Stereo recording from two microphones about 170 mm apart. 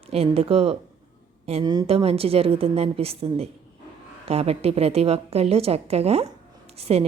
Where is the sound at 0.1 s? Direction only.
35° right (ahead or behind).